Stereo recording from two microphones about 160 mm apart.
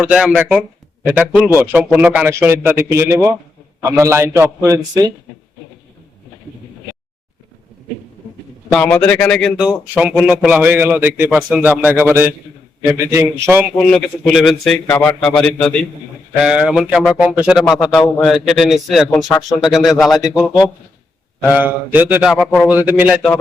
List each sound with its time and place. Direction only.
0.0 s a man's voice: 5° right (ahead or behind)
8.7 s a man's voice: 5° left (ahead or behind); by 11.8 s 10° right (ahead or behind)
12.9 s a man's voice: 20° right (ahead or behind)
13.7 s a man's voice: 5° left (ahead or behind)